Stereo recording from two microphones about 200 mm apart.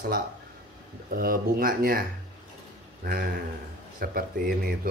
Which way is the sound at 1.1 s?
45° right (ahead or behind).